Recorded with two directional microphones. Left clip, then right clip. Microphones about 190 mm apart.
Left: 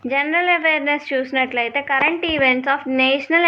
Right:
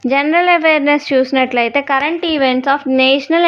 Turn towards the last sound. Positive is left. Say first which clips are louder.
# right 5 dB
turn(degrees=-45)  # may be behind; listen again after turning